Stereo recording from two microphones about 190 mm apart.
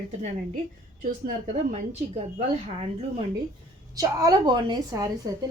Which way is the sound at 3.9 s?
20° right (ahead or behind).